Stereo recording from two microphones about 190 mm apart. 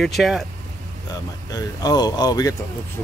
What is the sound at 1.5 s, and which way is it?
Speech, 20° left (ahead or behind).